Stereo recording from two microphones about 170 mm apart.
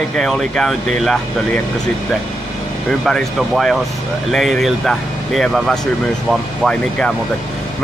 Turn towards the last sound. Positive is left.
turn(degrees=5)  # may be behind; listen again after turning